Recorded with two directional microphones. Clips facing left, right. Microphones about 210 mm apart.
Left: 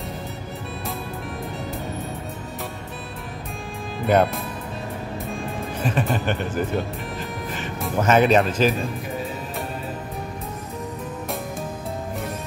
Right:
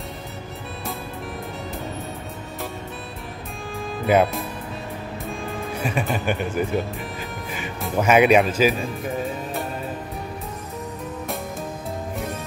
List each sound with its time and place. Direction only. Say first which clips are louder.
4.0 s speech: even; centre (ahead or behind)
5.8 s speech: left 2 dB; 10° right (ahead or behind)